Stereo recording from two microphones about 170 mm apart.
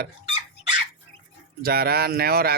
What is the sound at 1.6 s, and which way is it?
Speech, 65° right (ahead or behind).